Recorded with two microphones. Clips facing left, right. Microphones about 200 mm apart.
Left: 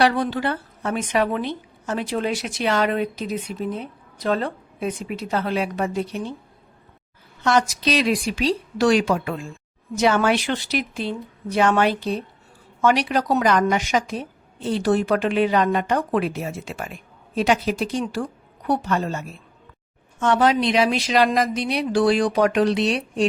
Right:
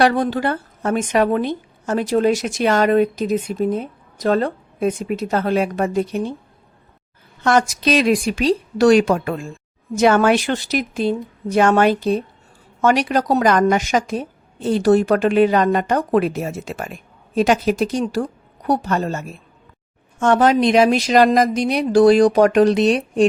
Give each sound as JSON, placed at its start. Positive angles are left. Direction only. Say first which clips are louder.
{"t": 0.0, "sound": "a woman's voice", "louder": "right 3 dB", "side_deg": -45}
{"t": 7.4, "sound": "a woman's voice", "louder": "right 3 dB", "side_deg": -50}